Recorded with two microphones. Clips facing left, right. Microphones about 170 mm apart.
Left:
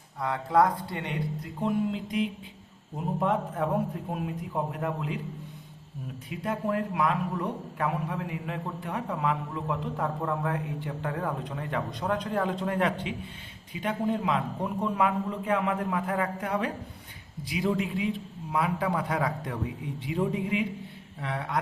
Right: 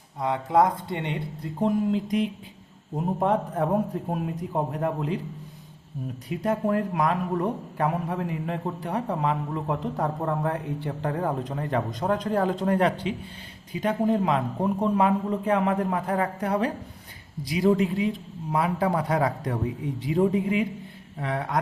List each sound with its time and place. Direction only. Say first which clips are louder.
0.2 s speech: right 2 dB; 20° right (ahead or behind)
1.5 s a man's voice: right 5 dB; 40° right (ahead or behind)
4.7 s a man's voice: right 5 dB; 40° right (ahead or behind)
6.4 s a man's voice: right 4 dB; 40° right (ahead or behind)